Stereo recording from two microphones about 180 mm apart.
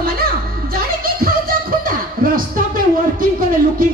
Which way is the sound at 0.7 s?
55° right (ahead or behind).